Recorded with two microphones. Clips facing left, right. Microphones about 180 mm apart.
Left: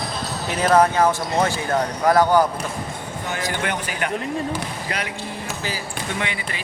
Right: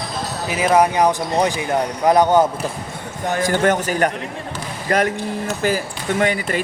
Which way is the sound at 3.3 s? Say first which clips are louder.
Right 9 dB; 45° right (ahead or behind).